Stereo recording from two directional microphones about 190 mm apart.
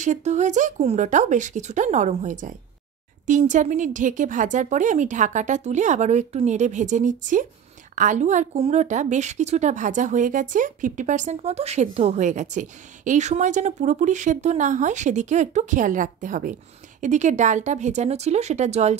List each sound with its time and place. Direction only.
0.0 s speech: 40° right (ahead or behind)